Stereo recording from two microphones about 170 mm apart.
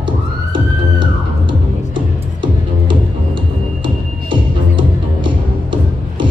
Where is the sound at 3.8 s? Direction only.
30° right (ahead or behind).